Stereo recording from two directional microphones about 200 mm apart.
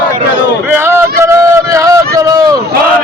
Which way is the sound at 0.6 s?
10° right (ahead or behind).